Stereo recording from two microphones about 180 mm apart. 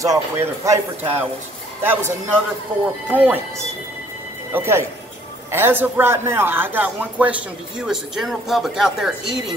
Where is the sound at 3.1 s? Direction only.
10° right (ahead or behind).